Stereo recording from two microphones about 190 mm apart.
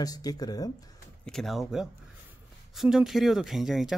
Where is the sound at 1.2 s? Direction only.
Centre (ahead or behind).